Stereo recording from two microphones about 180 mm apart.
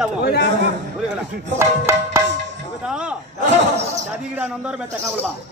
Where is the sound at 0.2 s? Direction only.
65° left (ahead or behind).